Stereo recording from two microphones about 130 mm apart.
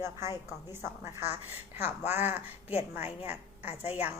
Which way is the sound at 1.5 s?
15° right (ahead or behind).